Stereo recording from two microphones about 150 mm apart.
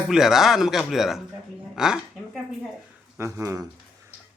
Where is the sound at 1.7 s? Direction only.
5° right (ahead or behind).